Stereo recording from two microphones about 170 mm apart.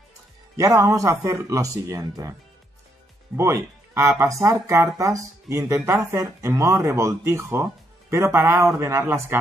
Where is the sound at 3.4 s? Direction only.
15° right (ahead or behind).